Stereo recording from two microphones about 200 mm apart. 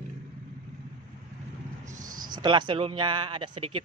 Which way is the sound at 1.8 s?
40° right (ahead or behind).